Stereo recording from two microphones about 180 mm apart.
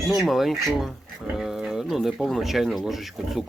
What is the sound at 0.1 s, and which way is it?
Speech, centre (ahead or behind).